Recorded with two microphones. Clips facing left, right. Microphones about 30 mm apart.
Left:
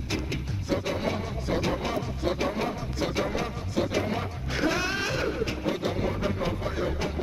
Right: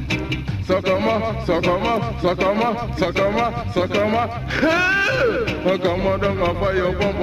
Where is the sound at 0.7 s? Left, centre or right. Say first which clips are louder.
Right 10 dB; right.